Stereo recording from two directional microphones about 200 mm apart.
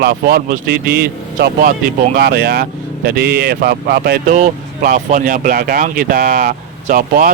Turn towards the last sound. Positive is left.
turn(degrees=-45)  # may be behind; listen again after turning